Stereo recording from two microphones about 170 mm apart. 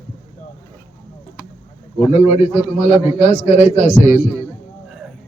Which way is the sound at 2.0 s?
40° left (ahead or behind).